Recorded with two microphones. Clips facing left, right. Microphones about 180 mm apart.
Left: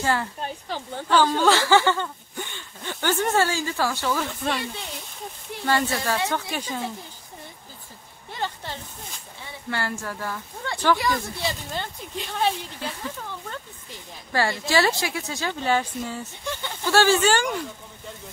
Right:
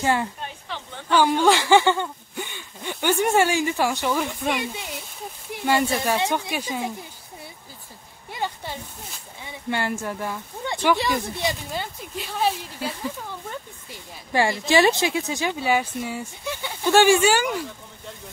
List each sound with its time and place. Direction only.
0.0 s speech: 15° right (ahead or behind)
0.4 s a woman's voice: 35° left (ahead or behind)
1.1 s speech: 15° right (ahead or behind)
8.3 s a sound: 10° right (ahead or behind)
9.4 s speech: 15° right (ahead or behind)